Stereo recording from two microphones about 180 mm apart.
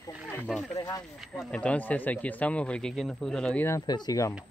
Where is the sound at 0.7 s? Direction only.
20° left (ahead or behind).